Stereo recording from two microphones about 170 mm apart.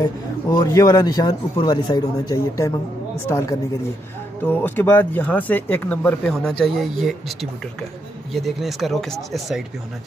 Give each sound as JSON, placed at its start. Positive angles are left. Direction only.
{"t": 0.0, "sound": "speech", "side_deg": 20}